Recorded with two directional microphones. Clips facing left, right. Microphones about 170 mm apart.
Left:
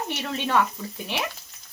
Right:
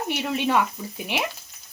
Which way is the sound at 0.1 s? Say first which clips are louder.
Right 3 dB; 15° right (ahead or behind).